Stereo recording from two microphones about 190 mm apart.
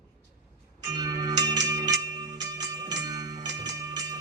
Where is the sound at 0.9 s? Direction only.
20° right (ahead or behind).